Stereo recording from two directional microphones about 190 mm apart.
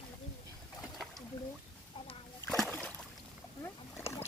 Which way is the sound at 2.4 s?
Centre (ahead or behind).